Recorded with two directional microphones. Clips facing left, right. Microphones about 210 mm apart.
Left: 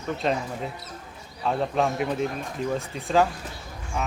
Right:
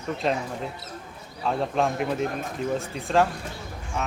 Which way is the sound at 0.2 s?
Centre (ahead or behind).